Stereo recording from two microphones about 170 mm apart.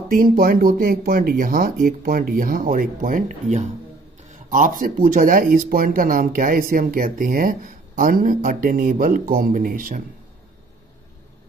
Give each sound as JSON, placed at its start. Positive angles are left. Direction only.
{"t": 0.1, "sound": "speech", "side_deg": -55}